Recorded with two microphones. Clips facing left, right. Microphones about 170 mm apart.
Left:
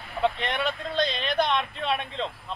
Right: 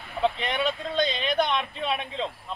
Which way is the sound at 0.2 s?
10° right (ahead or behind).